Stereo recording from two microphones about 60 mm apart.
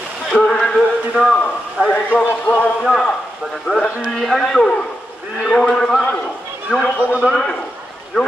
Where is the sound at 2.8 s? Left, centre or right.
Centre.